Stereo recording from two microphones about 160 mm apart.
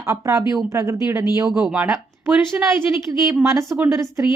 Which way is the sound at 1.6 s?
10° right (ahead or behind).